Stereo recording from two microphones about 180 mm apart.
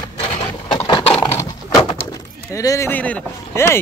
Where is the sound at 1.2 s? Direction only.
20° left (ahead or behind).